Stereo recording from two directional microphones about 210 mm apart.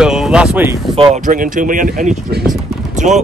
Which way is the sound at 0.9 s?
35° right (ahead or behind).